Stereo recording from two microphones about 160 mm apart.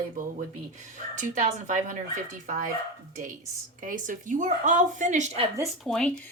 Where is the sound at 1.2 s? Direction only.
50° right (ahead or behind).